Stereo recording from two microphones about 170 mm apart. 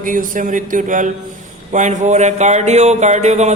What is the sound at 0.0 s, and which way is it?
Speech, 50° right (ahead or behind).